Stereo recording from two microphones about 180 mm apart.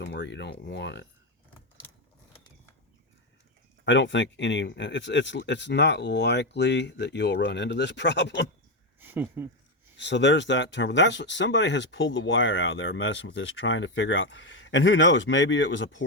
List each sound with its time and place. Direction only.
0.0 s speech: 85° left
3.8 s speech: 85° left
9.0 s speech: 10° right (ahead or behind)
10.0 s speech: 80° left